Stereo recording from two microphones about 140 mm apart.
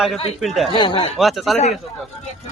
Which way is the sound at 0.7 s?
35° left (ahead or behind).